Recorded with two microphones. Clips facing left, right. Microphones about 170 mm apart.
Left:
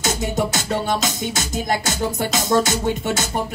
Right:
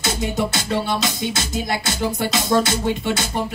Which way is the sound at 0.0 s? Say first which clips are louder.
Even; 45° left (ahead or behind).